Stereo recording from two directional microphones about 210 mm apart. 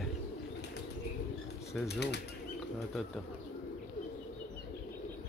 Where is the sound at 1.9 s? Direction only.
50° left (ahead or behind).